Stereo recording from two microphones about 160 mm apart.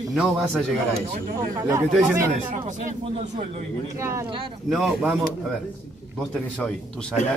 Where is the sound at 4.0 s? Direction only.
20° right (ahead or behind).